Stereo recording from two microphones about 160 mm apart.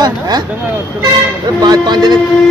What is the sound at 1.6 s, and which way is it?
Speech, 25° right (ahead or behind).